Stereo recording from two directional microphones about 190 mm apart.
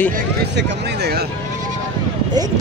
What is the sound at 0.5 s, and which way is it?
Speech, 60° right (ahead or behind).